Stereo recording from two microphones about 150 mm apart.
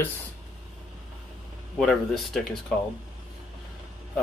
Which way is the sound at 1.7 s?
5° left (ahead or behind).